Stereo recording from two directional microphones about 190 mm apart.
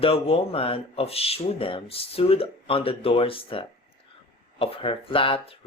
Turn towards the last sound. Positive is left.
turn(degrees=30)  # may be behind; listen again after turning